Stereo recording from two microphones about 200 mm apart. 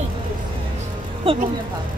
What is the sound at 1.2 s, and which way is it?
Speech, 25° right (ahead or behind).